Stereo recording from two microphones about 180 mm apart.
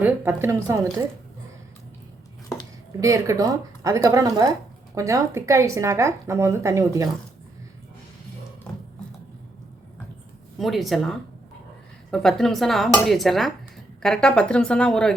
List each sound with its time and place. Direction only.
0.0 s speech: 15° right (ahead or behind)
3.0 s speech: 20° right (ahead or behind)
10.6 s speech: centre (ahead or behind)